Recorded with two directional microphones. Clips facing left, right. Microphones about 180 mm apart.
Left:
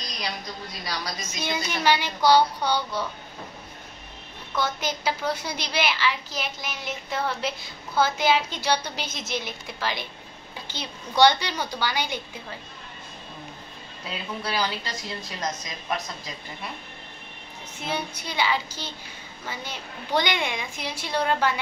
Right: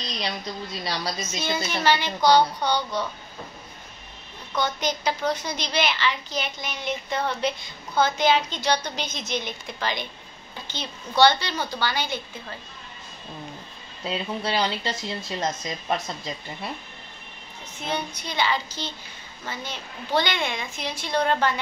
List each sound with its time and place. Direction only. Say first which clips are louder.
0.1 s speech: right 3 dB; 25° right (ahead or behind)
1.2 s a woman's voice: right 2 dB; 15° left (ahead or behind)
4.6 s a woman's voice: right 2 dB; 5° left (ahead or behind)
14.0 s speech: right 4 dB; 25° right (ahead or behind)
17.7 s a woman's voice: right 1 dB; 10° left (ahead or behind)